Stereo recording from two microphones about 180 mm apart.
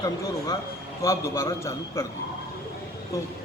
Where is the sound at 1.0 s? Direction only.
15° left (ahead or behind).